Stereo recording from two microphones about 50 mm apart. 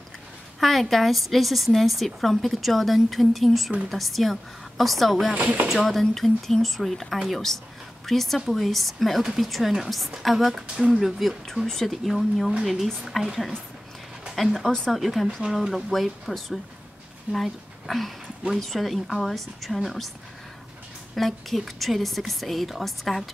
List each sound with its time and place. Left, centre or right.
0.6 s a woman's voice: centre
5.3 s speech: right
5.7 s a woman's voice: centre
21.1 s a woman's voice: centre